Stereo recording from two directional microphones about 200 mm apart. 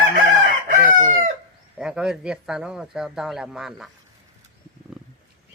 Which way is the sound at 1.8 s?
5° right (ahead or behind).